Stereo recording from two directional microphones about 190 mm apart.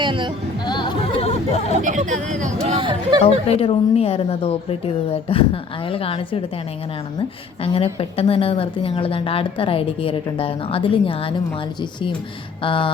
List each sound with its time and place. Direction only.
0.0 s a sound: 25° right (ahead or behind)
0.6 s chatter: 25° left (ahead or behind)
1.7 s speech: 40° right (ahead or behind)
3.2 s a woman's voice: 30° left (ahead or behind)
12.6 s a woman's voice: 25° left (ahead or behind)